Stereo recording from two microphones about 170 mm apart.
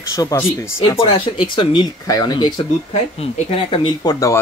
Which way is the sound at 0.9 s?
30° left (ahead or behind).